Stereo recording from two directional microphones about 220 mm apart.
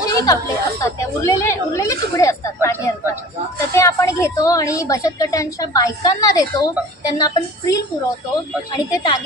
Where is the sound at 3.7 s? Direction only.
15° left (ahead or behind).